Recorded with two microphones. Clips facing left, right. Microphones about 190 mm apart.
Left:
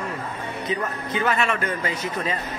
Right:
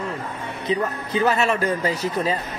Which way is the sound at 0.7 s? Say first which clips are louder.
Right 5 dB; 35° right (ahead or behind).